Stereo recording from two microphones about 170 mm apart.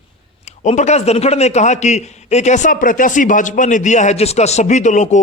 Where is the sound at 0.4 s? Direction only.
40° left (ahead or behind).